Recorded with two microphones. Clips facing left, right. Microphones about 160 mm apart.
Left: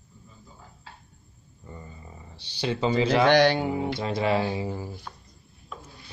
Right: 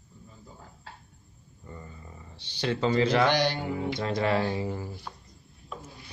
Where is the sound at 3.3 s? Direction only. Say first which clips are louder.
Left 7 dB; 65° left (ahead or behind).